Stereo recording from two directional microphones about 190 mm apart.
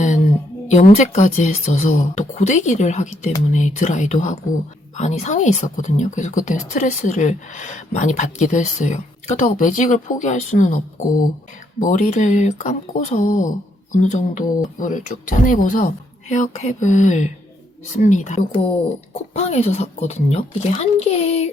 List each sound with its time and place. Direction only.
0.7 s speech: 40° left (ahead or behind)
11.8 s speech: 40° left (ahead or behind)